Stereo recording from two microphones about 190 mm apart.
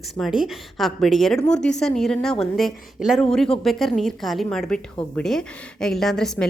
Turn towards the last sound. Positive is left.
turn(degrees=5)  # may be behind; listen again after turning